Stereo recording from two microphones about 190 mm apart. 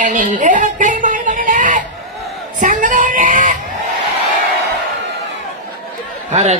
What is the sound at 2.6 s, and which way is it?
Child singing, 40° right (ahead or behind).